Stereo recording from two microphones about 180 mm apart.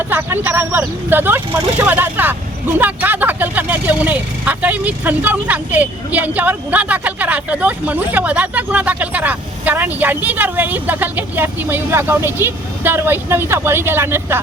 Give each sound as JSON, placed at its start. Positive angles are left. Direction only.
{"t": 0.0, "sound": "speech", "side_deg": -10}